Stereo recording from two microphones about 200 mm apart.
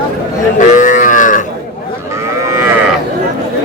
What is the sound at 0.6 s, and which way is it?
Moo, 40° left (ahead or behind).